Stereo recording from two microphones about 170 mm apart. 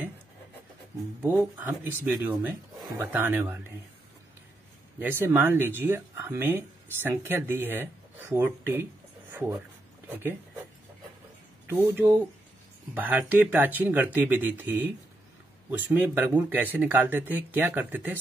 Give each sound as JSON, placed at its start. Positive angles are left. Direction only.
{"t": 1.2, "sound": "speech", "side_deg": -10}
{"t": 4.9, "sound": "speech", "side_deg": -10}
{"t": 10.0, "sound": "speech", "side_deg": -10}
{"t": 11.7, "sound": "speech", "side_deg": -10}